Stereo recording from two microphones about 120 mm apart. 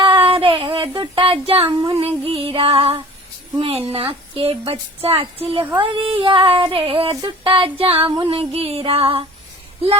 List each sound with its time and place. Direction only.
0.0 s child singing: 45° right (ahead or behind)
3.6 s female singing: 55° right (ahead or behind)